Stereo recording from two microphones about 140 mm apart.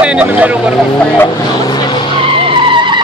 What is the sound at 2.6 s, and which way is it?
Vehicle, 35° right (ahead or behind).